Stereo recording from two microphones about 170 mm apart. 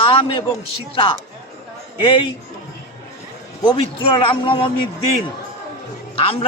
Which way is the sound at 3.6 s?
30° left (ahead or behind).